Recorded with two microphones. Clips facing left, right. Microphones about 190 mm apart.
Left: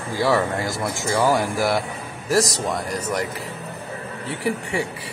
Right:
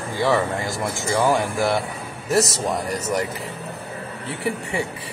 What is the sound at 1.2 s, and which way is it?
Speech, 5° left (ahead or behind).